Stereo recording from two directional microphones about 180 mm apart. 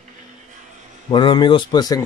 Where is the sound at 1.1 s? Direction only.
25° left (ahead or behind).